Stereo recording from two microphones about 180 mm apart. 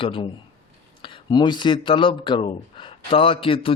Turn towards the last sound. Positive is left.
turn(degrees=30)  # may be behind; listen again after turning